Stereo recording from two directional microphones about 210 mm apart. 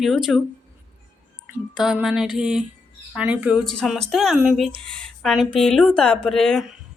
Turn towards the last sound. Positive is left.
turn(degrees=0)  # may be behind; listen again after turning